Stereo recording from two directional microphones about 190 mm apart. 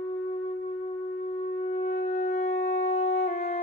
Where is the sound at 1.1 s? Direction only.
35° left (ahead or behind).